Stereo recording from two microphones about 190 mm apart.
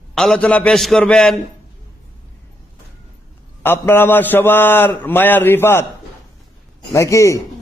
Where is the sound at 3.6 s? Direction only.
10° left (ahead or behind).